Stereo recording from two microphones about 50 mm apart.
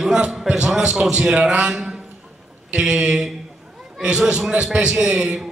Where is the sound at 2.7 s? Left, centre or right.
Centre.